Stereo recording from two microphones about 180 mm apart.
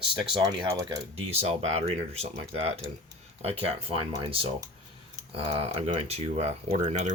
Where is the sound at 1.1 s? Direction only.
35° right (ahead or behind).